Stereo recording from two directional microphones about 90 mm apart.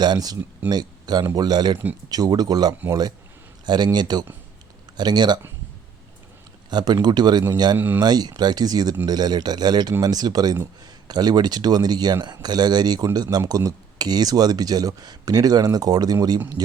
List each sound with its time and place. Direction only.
0.0 s speech: 50° right (ahead or behind)
3.9 s speech: 50° right (ahead or behind)
6.7 s speech: 55° right (ahead or behind)
7.8 s a man's voice: 20° right (ahead or behind)
8.0 s speech: 50° right (ahead or behind)